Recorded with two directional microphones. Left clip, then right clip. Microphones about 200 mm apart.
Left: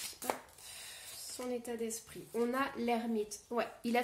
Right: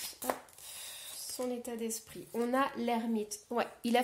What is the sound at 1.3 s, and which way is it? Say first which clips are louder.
Speech: right 2 dB; 40° right (ahead or behind).